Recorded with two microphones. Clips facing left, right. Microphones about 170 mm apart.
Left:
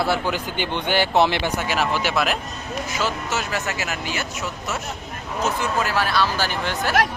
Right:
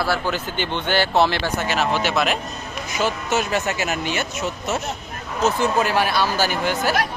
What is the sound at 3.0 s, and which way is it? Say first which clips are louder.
Speech: right 5 dB; 20° right (ahead or behind).